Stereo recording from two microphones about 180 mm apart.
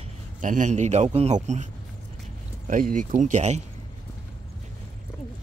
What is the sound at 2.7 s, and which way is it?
Speech, 50° right (ahead or behind).